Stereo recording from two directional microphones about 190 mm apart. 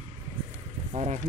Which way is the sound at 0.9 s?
30° right (ahead or behind).